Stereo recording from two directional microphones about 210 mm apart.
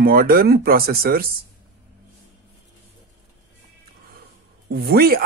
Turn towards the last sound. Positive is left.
turn(degrees=-45)  # may be behind; listen again after turning